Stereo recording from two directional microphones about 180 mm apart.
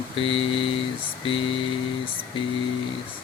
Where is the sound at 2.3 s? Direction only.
30° left (ahead or behind).